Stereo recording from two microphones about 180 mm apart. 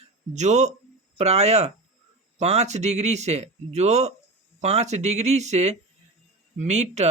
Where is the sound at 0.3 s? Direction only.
40° right (ahead or behind).